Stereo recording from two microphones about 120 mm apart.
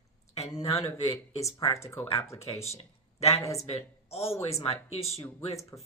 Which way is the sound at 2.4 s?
60° left (ahead or behind).